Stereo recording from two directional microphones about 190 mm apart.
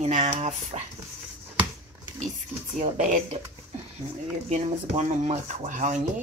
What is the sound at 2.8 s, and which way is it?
Speech, 40° right (ahead or behind).